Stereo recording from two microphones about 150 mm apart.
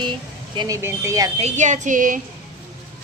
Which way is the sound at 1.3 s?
50° right (ahead or behind).